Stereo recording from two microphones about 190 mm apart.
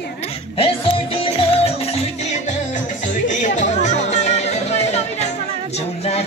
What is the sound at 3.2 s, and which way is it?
Music, 40° left (ahead or behind).